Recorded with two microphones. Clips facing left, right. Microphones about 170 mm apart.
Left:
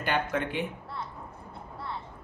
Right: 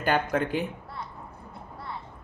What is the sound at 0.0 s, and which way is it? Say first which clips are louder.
Speech: right 4 dB; 45° right (ahead or behind).